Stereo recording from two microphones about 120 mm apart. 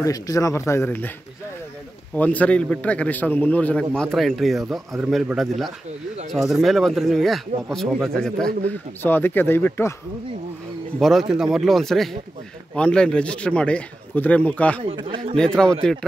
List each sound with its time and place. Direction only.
0.0 s speech: 30° left (ahead or behind)
2.1 s a man's voice: 10° left (ahead or behind)
9.0 s a man's voice: 20° left (ahead or behind)
11.0 s a man's voice: centre (ahead or behind)
15.0 s speech: 45° right (ahead or behind)
15.3 s a man's voice: 5° left (ahead or behind)